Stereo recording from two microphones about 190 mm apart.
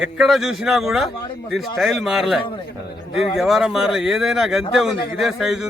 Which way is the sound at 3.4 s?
Centre (ahead or behind).